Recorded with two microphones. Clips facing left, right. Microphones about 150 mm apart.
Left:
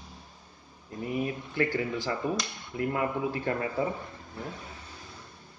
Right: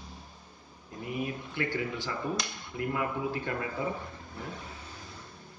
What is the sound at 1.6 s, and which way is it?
Speech, 35° left (ahead or behind).